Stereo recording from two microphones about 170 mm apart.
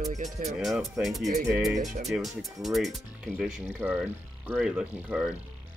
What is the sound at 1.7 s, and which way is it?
Speech, 45° right (ahead or behind).